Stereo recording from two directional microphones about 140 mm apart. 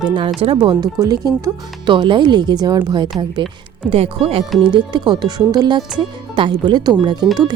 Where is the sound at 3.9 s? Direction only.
45° right (ahead or behind).